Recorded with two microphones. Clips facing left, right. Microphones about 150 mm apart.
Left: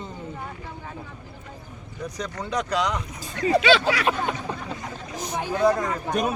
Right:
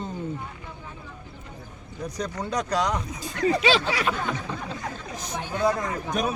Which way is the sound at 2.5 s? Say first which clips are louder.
Left 1 dB; 40° right (ahead or behind).